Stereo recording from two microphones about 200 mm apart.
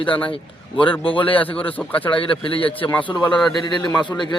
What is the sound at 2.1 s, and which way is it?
Speech, 25° left (ahead or behind).